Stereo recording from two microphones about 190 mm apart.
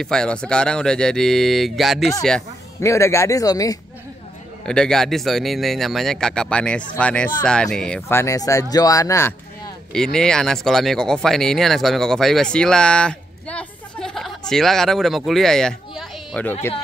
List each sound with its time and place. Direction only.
0.0 s speech: 5° left (ahead or behind)
2.8 s speech: 15° left (ahead or behind)
4.6 s speech: 5° left (ahead or behind)
9.9 s speech: 5° left (ahead or behind)